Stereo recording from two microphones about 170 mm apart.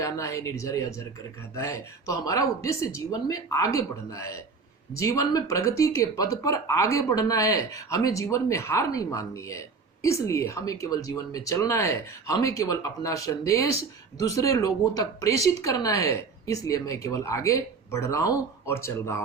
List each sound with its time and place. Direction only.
0.0 s speech: 20° left (ahead or behind)